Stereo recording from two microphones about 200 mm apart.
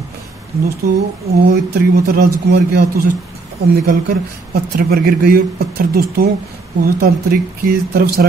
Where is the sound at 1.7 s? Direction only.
45° right (ahead or behind).